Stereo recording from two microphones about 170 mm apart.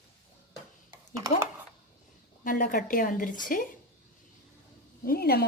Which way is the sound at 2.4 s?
55° left (ahead or behind).